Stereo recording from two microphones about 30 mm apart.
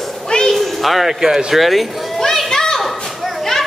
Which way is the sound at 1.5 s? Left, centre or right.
Centre.